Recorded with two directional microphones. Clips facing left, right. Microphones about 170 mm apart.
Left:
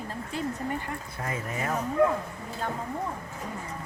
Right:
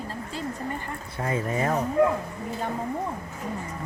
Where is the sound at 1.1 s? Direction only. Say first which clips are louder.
Right 8 dB; 30° right (ahead or behind).